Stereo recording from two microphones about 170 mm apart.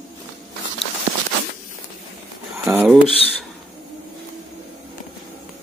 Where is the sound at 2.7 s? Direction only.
10° right (ahead or behind).